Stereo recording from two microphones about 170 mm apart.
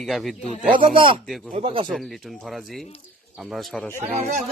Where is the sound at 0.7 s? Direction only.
30° right (ahead or behind).